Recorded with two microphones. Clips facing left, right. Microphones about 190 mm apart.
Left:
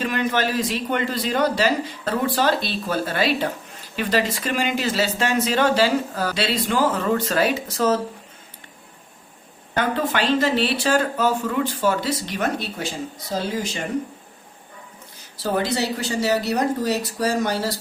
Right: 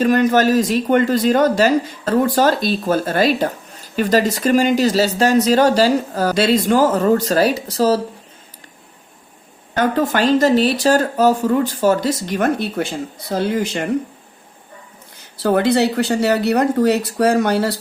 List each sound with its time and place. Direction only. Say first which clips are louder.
0.0 s speech: right 9 dB; 45° right (ahead or behind)
9.7 s speech: right 5 dB; 45° right (ahead or behind); by 13.8 s 60° right (ahead or behind)
15.4 s speech: right 8 dB; 60° right (ahead or behind)